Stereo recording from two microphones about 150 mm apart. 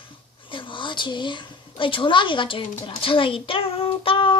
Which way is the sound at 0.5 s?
35° left (ahead or behind).